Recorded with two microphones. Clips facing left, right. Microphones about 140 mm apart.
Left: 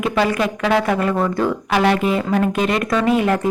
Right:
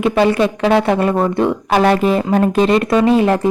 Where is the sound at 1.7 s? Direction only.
40° right (ahead or behind).